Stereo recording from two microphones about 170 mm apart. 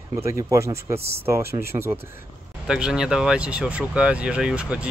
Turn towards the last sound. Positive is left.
turn(degrees=-5)  # may be behind; listen again after turning